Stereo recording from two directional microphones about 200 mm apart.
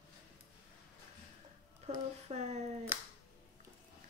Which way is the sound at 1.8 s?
35° right (ahead or behind).